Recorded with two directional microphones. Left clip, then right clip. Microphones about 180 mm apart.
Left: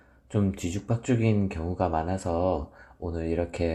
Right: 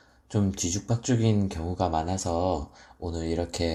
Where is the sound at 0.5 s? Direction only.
25° left (ahead or behind).